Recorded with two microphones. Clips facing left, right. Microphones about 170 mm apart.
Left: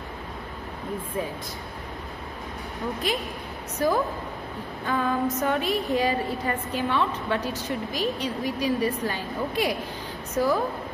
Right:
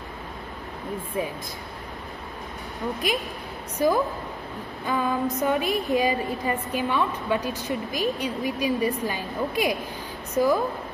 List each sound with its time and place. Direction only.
3.0 s a woman's voice: 15° right (ahead or behind)